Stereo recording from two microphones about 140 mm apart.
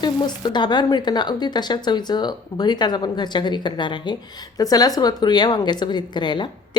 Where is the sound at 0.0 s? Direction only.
30° left (ahead or behind).